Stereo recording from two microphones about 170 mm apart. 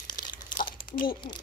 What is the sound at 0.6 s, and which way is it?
Typing, 55° left (ahead or behind).